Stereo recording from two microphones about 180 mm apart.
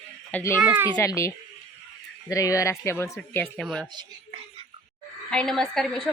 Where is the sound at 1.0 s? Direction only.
15° left (ahead or behind).